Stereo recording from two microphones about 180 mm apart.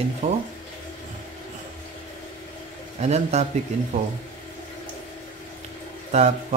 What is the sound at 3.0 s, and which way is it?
Speech, 40° right (ahead or behind).